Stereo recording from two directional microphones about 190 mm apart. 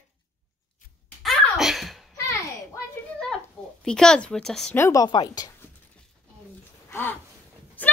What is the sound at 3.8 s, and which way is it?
Speech, 5° left (ahead or behind).